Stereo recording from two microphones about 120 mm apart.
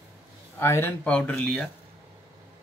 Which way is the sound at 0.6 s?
20° left (ahead or behind).